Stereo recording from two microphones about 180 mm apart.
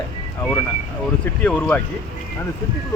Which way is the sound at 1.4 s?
5° left (ahead or behind).